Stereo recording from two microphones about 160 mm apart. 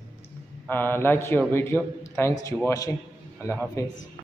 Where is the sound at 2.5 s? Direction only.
Centre (ahead or behind).